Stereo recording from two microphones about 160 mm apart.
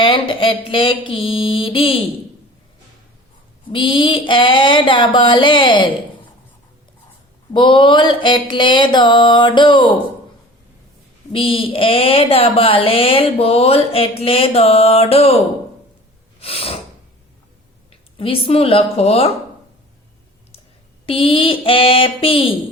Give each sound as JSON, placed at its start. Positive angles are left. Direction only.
{"t": 0.0, "sound": "speech", "side_deg": 30}
{"t": 3.7, "sound": "speech", "side_deg": 30}
{"t": 7.5, "sound": "a sound", "side_deg": 30}
{"t": 11.3, "sound": "speech", "side_deg": 35}
{"t": 16.4, "sound": "snort", "side_deg": 35}
{"t": 18.2, "sound": "speech", "side_deg": 35}
{"t": 21.1, "sound": "speech", "side_deg": 35}